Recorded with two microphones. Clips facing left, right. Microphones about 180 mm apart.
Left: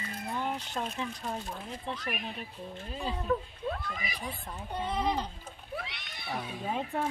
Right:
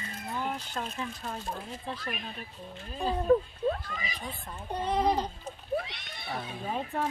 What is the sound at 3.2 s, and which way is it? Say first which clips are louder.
Speech: right 9 dB; 40° right (ahead or behind).